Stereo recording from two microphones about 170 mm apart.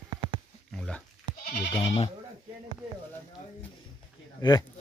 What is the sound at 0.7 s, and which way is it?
Dog, 5° left (ahead or behind).